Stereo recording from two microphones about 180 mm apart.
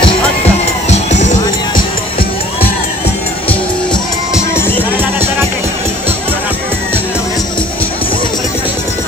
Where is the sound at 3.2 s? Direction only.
10° left (ahead or behind).